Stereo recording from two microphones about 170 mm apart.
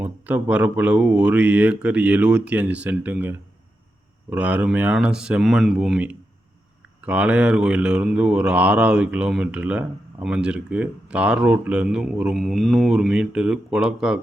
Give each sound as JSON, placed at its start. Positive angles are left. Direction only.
{"t": 0.0, "sound": "speech", "side_deg": -10}